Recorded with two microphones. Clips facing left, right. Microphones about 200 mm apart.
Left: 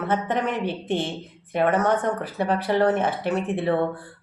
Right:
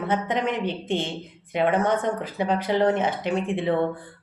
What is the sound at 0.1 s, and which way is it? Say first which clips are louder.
Speech: even; 15° right (ahead or behind).